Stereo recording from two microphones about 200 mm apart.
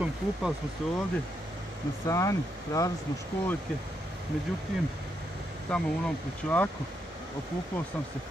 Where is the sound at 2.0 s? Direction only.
15° left (ahead or behind).